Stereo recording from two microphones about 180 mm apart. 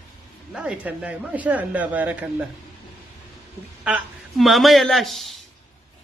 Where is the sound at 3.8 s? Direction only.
5° right (ahead or behind).